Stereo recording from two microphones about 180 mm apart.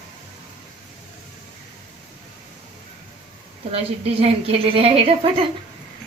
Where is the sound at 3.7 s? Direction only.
35° right (ahead or behind).